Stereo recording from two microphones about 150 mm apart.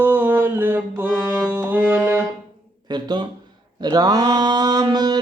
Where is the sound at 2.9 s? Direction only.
30° right (ahead or behind).